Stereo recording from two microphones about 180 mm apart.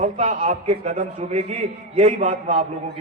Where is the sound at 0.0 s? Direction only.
45° right (ahead or behind).